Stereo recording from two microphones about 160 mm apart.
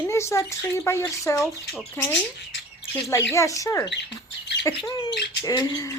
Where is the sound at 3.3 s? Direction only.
20° left (ahead or behind).